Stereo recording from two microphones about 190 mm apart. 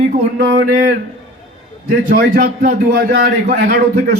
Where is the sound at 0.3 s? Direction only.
60° right (ahead or behind).